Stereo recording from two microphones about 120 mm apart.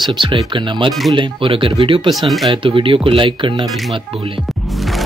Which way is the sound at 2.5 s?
45° right (ahead or behind).